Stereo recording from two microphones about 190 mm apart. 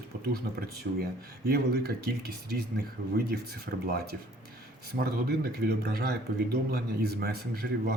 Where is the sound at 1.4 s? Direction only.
55° right (ahead or behind).